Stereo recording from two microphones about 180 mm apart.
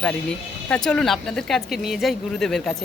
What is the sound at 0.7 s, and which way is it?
Speech, 5° left (ahead or behind).